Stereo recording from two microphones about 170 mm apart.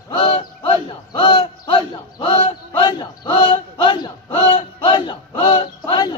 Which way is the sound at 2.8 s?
25° left (ahead or behind).